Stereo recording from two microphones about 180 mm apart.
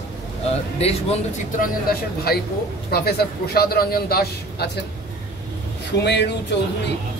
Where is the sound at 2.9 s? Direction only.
60° left (ahead or behind).